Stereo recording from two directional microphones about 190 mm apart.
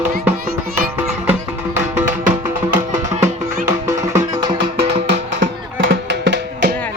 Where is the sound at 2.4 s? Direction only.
10° right (ahead or behind).